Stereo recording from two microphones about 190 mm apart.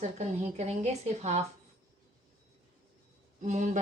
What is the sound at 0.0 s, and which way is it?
Speech, 35° right (ahead or behind).